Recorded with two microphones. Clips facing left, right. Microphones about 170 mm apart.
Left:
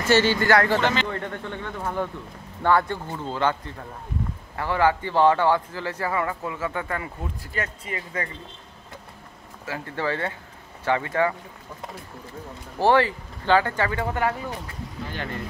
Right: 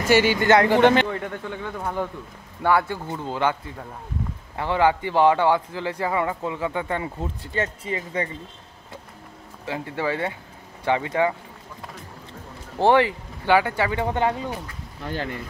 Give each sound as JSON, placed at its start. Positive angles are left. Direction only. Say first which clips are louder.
{"t": 0.0, "sound": "a man's voice", "louder": "right 1 dB", "side_deg": -10}
{"t": 1.1, "sound": "a man's voice", "louder": "right 1 dB", "side_deg": -10}
{"t": 9.7, "sound": "a man's voice", "louder": "right 2 dB", "side_deg": -15}
{"t": 12.7, "sound": "a man's voice", "louder": "right 2 dB", "side_deg": -20}